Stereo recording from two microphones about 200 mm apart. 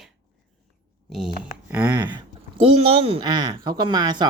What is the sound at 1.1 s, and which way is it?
Speech, centre (ahead or behind).